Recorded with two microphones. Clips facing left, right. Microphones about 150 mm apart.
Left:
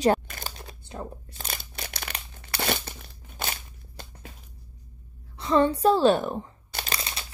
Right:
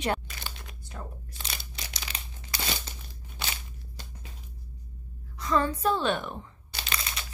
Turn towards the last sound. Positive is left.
turn(degrees=35)  # may be behind; listen again after turning